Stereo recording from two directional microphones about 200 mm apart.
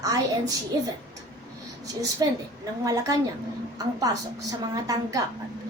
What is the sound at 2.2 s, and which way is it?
A woman's voice, 20° right (ahead or behind).